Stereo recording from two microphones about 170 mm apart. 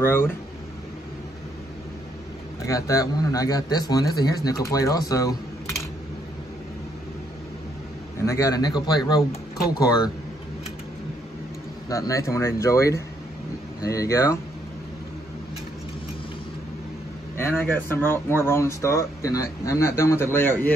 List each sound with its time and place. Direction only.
0.0 s speech: 15° left (ahead or behind)
2.6 s a man's voice: 20° left (ahead or behind)
8.2 s a man's voice: 20° left (ahead or behind)
11.9 s a man's voice: 20° left (ahead or behind)
17.4 s speech: 15° left (ahead or behind)